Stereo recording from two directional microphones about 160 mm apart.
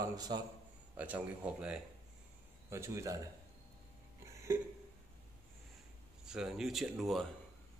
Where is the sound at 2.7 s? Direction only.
20° right (ahead or behind).